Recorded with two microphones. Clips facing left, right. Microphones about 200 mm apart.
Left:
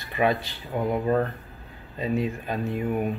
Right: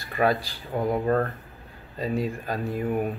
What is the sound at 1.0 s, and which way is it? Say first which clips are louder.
Speech: left 1 dB; 15° left (ahead or behind).